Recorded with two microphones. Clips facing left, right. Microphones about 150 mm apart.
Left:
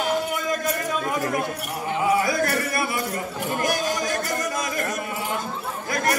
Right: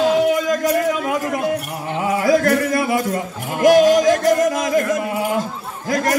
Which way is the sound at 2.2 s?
90° right.